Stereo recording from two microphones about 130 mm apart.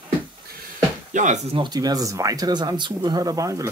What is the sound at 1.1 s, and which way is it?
Speech, 70° right (ahead or behind).